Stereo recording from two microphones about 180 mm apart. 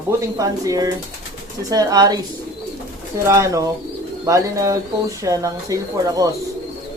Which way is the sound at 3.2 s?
15° right (ahead or behind).